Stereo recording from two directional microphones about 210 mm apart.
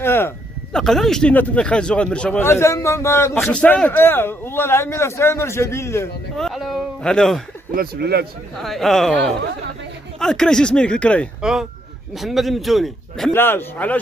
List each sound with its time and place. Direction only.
0.0 s a man's voice: 10° left (ahead or behind)
6.3 s speech: centre (ahead or behind)
7.7 s speech: 45° right (ahead or behind)
8.5 s speech: centre (ahead or behind)